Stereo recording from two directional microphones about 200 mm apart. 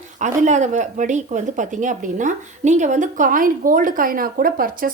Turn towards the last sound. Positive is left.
turn(degrees=-45)  # may be behind; listen again after turning